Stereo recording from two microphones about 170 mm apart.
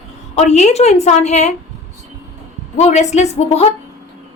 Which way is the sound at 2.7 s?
40° left (ahead or behind).